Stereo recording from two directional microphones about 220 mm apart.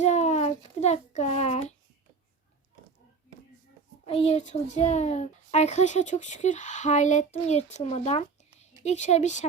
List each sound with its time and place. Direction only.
0.0 s child singing: 30° left (ahead or behind)
4.0 s a child's voice: 25° left (ahead or behind)